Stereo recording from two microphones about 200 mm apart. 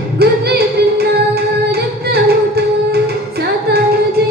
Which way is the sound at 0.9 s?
50° right (ahead or behind).